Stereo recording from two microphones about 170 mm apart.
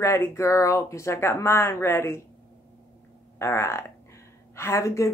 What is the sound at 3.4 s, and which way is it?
A woman's voice, 15° left (ahead or behind).